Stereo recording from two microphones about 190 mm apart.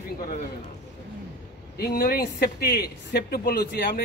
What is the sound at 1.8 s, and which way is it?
Speech, 50° left (ahead or behind).